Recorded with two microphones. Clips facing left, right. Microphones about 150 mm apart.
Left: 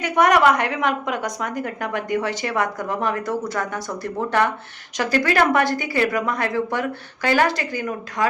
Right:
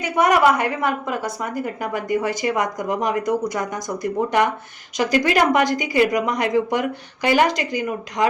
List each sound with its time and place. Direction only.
0.0 s speech: 10° right (ahead or behind)